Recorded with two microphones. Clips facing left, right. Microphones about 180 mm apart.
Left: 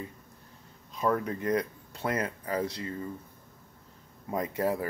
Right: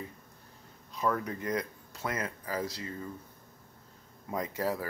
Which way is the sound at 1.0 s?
30° left (ahead or behind).